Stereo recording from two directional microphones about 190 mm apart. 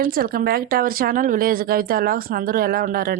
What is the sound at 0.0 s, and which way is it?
Speech, 50° right (ahead or behind).